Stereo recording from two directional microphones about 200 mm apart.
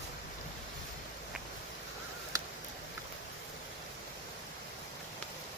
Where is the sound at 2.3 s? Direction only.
15° right (ahead or behind).